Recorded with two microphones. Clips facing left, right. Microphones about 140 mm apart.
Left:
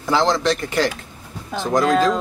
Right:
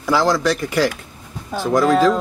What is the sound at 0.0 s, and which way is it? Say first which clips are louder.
Speech: right 1 dB; 20° left (ahead or behind).